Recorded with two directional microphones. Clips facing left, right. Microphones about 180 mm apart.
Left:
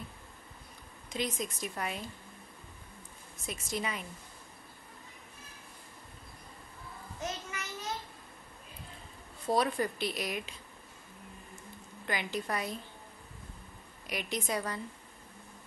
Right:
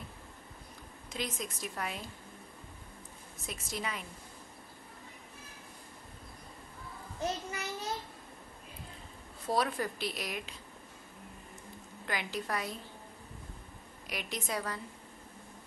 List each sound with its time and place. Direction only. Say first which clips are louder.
1.1 s speech: left 3 dB; centre (ahead or behind)
3.4 s speech: left 3 dB; centre (ahead or behind)
7.2 s a sound: right 4 dB; 35° right (ahead or behind)
9.5 s speech: left 2 dB; centre (ahead or behind)
12.1 s speech: left 1 dB; centre (ahead or behind)
14.0 s speech: left 3 dB; centre (ahead or behind)